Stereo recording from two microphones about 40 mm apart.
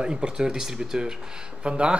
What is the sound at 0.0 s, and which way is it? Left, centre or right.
Speech, right.